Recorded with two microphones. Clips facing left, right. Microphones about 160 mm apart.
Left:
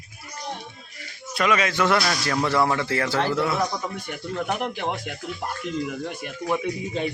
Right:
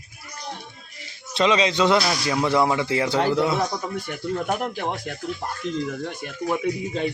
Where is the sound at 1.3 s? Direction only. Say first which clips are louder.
Right 3 dB; 20° right (ahead or behind).